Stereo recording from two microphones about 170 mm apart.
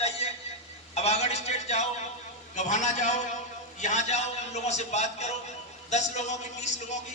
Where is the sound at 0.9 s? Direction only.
40° left (ahead or behind).